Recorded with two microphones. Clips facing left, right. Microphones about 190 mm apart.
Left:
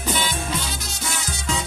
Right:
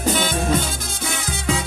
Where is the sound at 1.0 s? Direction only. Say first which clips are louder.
Right 5 dB; 60° right (ahead or behind).